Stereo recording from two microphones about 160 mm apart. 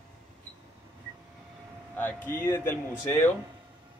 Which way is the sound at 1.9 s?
10° left (ahead or behind).